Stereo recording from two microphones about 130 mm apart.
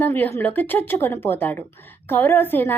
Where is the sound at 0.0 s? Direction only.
15° left (ahead or behind).